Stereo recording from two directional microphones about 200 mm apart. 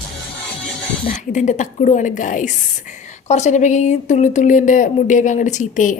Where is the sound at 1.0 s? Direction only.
40° left (ahead or behind).